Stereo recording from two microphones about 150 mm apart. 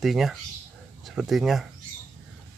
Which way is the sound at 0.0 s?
Centre (ahead or behind).